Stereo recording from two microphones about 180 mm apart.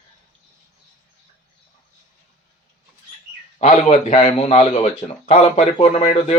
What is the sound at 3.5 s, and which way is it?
Speech, 40° left (ahead or behind).